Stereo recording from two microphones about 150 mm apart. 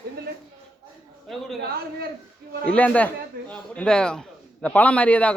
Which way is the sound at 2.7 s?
10° left (ahead or behind).